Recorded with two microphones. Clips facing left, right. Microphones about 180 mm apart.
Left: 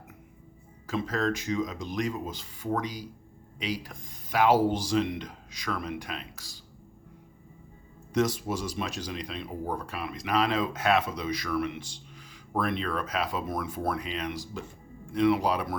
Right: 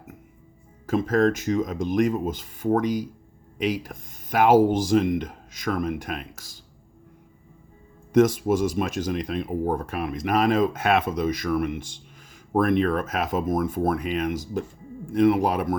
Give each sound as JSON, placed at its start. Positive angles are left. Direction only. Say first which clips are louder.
{"t": 0.9, "sound": "speech", "louder": "right 8 dB", "side_deg": -50}
{"t": 8.1, "sound": "speech", "louder": "right 9 dB", "side_deg": -50}